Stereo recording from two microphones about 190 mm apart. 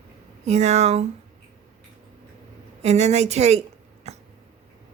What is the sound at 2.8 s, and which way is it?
A woman's voice, 35° right (ahead or behind).